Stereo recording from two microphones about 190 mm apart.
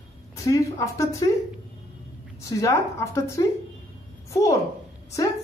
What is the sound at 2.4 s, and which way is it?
Speech, 15° left (ahead or behind).